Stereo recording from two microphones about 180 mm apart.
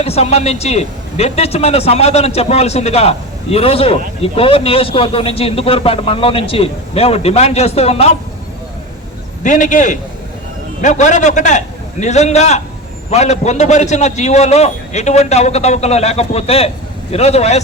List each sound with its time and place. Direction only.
0.0 s a man's voice: 35° left (ahead or behind)
9.4 s a man's voice: 45° left (ahead or behind)